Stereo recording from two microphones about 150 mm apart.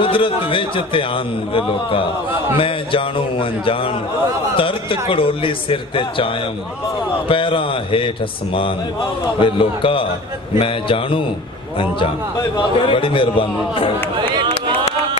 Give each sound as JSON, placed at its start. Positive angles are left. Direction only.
{"t": 0.0, "sound": "a man's voice", "side_deg": 35}
{"t": 9.4, "sound": "a man's voice", "side_deg": 35}
{"t": 12.5, "sound": "a man's voice", "side_deg": 35}